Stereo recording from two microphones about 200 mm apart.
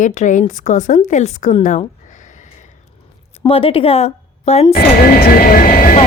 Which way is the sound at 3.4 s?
25° left (ahead or behind).